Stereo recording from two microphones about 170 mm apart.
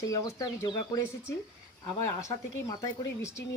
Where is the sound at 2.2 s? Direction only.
20° left (ahead or behind).